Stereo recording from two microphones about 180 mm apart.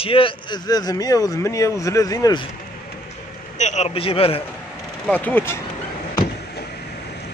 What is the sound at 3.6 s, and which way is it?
Speech, 40° left (ahead or behind).